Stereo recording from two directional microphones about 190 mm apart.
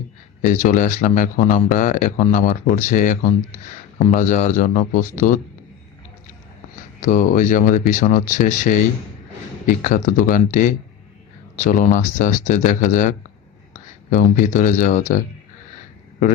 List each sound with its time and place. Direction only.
0.4 s speech: 45° left (ahead or behind)
7.0 s speech: 45° left (ahead or behind)